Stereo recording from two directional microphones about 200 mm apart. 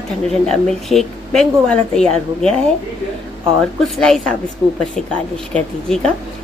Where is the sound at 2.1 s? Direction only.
30° right (ahead or behind).